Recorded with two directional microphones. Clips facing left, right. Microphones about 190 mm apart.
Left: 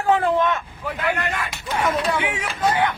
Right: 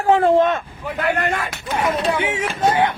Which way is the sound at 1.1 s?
45° right (ahead or behind).